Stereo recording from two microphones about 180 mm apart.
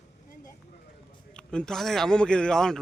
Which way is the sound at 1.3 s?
5° left (ahead or behind).